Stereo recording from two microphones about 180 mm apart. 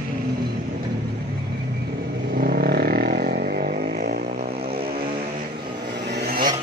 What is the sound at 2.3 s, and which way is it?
Vehicle, 60° right (ahead or behind).